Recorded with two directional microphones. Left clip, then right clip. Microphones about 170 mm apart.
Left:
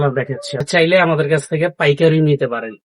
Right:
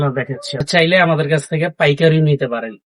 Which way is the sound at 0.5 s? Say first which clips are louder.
Even; 20° left (ahead or behind).